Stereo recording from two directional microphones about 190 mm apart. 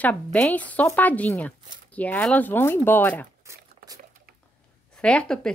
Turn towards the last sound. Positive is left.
turn(degrees=5)  # may be behind; listen again after turning